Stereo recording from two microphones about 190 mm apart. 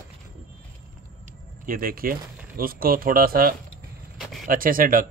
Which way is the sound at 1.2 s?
45° right (ahead or behind).